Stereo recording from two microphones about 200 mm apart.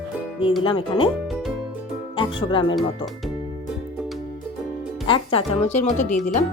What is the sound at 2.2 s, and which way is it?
Speech, 25° left (ahead or behind).